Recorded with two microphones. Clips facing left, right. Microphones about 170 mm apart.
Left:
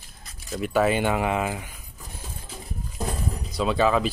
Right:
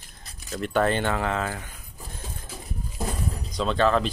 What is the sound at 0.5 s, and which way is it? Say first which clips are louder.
Speech: left 1 dB; 5° left (ahead or behind).